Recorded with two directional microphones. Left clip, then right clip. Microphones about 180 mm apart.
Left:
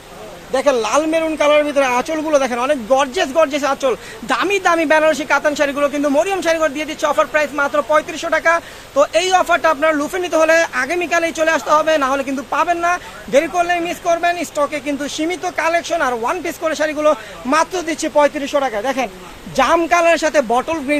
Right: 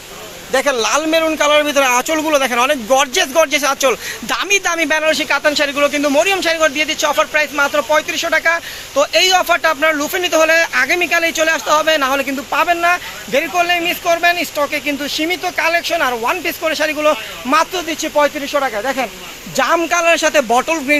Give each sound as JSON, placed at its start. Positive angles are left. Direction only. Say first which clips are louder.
{"t": 0.5, "sound": "speech", "louder": "even", "side_deg": 0}
{"t": 17.8, "sound": "speech", "louder": "even", "side_deg": 20}